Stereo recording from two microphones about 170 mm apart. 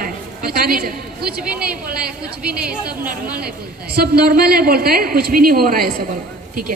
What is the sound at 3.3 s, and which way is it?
A woman's voice, 65° right (ahead or behind).